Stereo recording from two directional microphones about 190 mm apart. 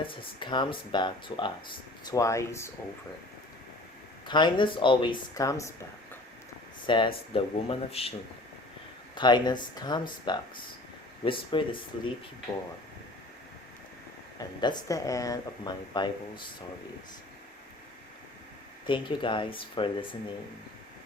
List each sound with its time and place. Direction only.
0.0 s speech: 25° left (ahead or behind)
4.3 s speech: 25° left (ahead or behind)
6.8 s speech: 25° left (ahead or behind)
9.1 s speech: 25° left (ahead or behind)
14.3 s speech: 20° left (ahead or behind)
18.9 s speech: 25° left (ahead or behind)